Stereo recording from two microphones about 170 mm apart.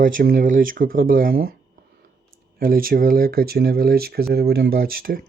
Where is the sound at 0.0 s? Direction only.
55° right (ahead or behind).